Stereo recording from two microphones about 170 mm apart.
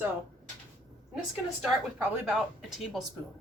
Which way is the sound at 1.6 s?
Centre (ahead or behind).